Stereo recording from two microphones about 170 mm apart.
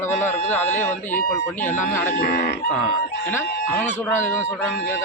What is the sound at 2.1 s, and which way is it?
Speech, 75° left (ahead or behind).